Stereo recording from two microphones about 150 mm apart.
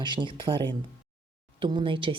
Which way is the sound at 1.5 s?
30° right (ahead or behind).